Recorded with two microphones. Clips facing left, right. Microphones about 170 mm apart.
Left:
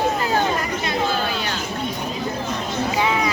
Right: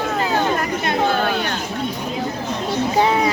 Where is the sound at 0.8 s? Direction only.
55° right (ahead or behind).